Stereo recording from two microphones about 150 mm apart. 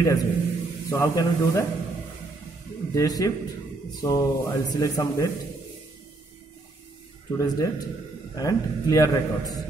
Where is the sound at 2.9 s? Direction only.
25° left (ahead or behind).